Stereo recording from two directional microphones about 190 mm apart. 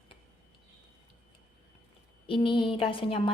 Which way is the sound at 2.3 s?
25° left (ahead or behind).